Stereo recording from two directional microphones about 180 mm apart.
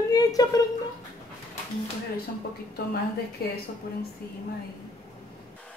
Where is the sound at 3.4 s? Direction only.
60° left (ahead or behind).